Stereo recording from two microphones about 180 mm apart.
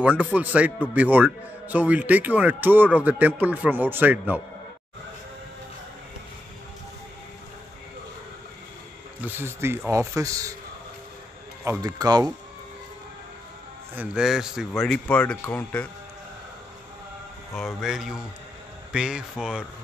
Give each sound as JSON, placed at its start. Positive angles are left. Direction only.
{"t": 0.0, "sound": "a man's voice", "side_deg": -5}
{"t": 9.2, "sound": "a man's voice", "side_deg": -15}
{"t": 11.6, "sound": "speech", "side_deg": -20}
{"t": 13.9, "sound": "speech", "side_deg": -5}
{"t": 17.6, "sound": "speech", "side_deg": 0}